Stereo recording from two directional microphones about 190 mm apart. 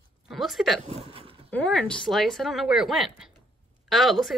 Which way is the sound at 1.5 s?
5° left (ahead or behind).